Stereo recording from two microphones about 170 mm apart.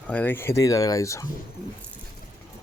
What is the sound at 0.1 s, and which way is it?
Speech, 10° left (ahead or behind).